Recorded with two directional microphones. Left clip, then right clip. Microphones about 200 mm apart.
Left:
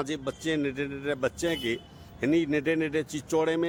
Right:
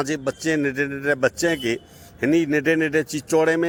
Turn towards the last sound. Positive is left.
turn(degrees=-25)  # may be behind; listen again after turning